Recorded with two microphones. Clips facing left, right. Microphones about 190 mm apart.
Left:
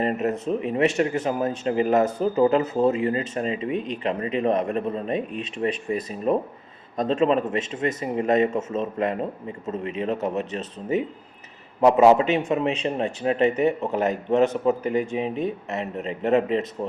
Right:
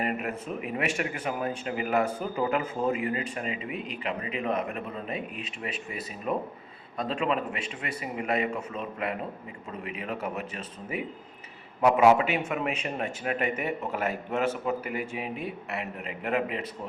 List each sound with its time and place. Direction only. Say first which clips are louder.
0.0 s a man's voice: left 7 dB; 35° left (ahead or behind)
6.9 s a man's voice: left 8 dB; 40° left (ahead or behind)
11.9 s speech: left 4 dB; 30° left (ahead or behind)